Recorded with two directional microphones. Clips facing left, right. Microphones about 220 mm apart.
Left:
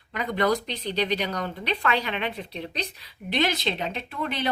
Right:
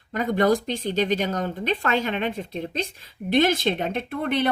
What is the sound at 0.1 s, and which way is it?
A woman's voice, 45° right (ahead or behind).